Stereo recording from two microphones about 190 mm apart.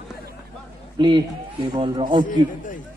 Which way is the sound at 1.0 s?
25° right (ahead or behind).